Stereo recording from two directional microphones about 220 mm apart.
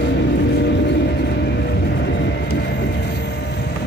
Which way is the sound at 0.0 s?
50° left (ahead or behind).